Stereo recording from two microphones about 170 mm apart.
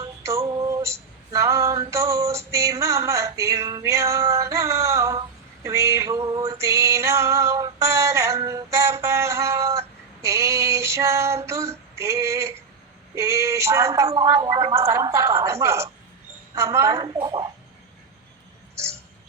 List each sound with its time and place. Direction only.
0.0 s music: 20° right (ahead or behind)
0.4 s female singing: 25° right (ahead or behind)
5.6 s music: 20° right (ahead or behind)
10.2 s female singing: 15° right (ahead or behind)
13.1 s a sound: 15° right (ahead or behind)
14.1 s a woman's voice: 25° right (ahead or behind)